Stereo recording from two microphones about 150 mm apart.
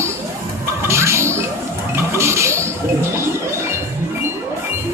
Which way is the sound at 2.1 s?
20° right (ahead or behind).